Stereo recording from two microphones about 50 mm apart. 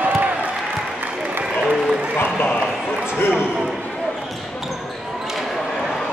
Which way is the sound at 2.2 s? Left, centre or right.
Left.